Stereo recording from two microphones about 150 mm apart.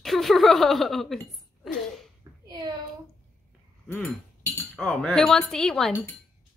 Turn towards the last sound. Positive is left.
turn(degrees=5)  # may be behind; listen again after turning